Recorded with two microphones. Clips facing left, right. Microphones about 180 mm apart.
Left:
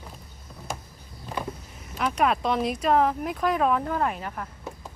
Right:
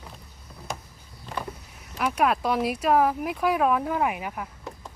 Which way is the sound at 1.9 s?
5° right (ahead or behind).